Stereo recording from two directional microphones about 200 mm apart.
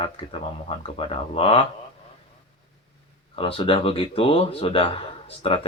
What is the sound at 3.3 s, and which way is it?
Speech, 25° left (ahead or behind).